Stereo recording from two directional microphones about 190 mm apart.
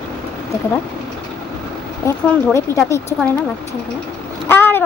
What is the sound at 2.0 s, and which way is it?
A child's voice, 15° left (ahead or behind).